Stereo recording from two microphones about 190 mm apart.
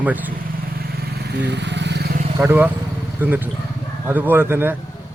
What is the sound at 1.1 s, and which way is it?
Vehicle, 60° right (ahead or behind).